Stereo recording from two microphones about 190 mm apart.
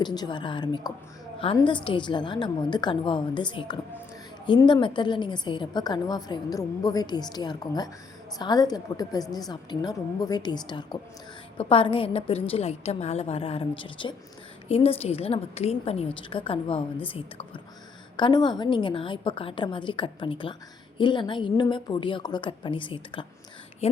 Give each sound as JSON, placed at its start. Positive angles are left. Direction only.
{"t": 0.0, "sound": "a woman's voice", "side_deg": 20}